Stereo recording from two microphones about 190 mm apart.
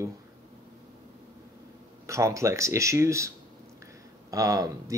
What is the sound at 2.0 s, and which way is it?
Speech, 15° right (ahead or behind).